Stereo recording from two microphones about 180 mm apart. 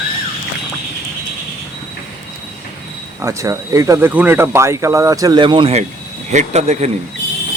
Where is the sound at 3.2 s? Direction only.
15° right (ahead or behind); by 6.9 s 40° right (ahead or behind).